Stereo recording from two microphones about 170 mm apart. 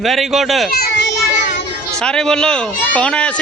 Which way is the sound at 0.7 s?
65° left (ahead or behind).